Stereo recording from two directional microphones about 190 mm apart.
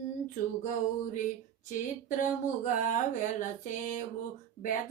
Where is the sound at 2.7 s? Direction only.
45° left (ahead or behind).